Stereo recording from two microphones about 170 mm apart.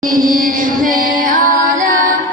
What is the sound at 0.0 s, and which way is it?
Music, 55° right (ahead or behind).